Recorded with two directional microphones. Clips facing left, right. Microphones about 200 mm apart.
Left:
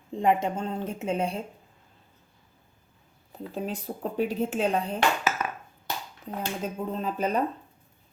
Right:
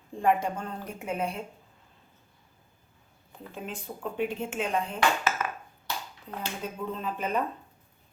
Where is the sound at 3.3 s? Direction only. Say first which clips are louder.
Left 6 dB; 35° left (ahead or behind).